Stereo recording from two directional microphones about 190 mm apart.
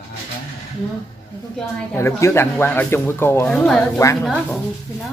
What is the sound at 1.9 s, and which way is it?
A woman's voice, 15° left (ahead or behind).